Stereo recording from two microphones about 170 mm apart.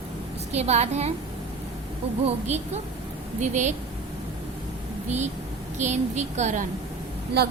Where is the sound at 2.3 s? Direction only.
40° right (ahead or behind).